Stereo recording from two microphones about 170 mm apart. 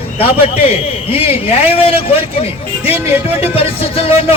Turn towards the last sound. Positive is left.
turn(degrees=35)  # may be behind; listen again after turning